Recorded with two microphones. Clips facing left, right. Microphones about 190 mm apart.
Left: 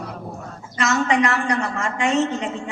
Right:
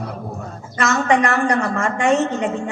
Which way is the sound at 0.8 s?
50° right (ahead or behind).